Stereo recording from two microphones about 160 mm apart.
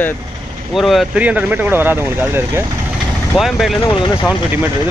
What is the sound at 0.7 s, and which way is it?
Speech, centre (ahead or behind).